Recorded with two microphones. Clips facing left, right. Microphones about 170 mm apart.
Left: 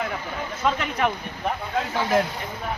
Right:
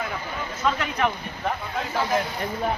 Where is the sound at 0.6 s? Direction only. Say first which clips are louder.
Left 1 dB; 25° left (ahead or behind).